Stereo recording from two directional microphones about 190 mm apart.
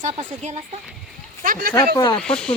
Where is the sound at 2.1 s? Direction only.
5° left (ahead or behind).